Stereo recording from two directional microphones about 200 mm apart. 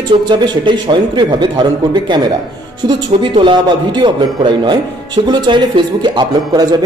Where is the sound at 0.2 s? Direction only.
20° right (ahead or behind).